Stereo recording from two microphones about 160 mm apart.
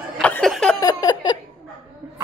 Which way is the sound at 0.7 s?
25° left (ahead or behind).